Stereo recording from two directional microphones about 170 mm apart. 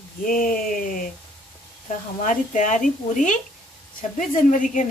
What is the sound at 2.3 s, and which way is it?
Speech, 50° left (ahead or behind).